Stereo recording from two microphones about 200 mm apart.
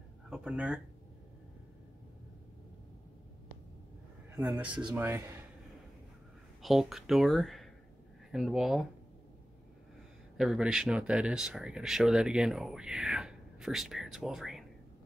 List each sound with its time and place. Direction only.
0.3 s speech: 5° right (ahead or behind)
4.4 s speech: 5° right (ahead or behind)
6.6 s speech: centre (ahead or behind)
10.3 s speech: 5° right (ahead or behind)